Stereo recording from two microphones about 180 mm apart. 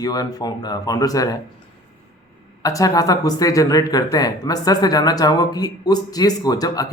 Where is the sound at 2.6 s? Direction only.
20° left (ahead or behind).